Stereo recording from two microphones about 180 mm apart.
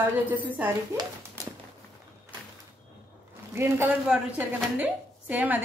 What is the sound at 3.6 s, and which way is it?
A woman's voice, 10° right (ahead or behind).